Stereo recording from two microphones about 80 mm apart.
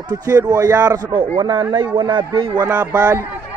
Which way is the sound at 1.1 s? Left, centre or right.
Right.